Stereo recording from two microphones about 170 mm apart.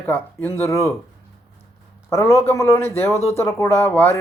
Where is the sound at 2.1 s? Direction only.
15° left (ahead or behind).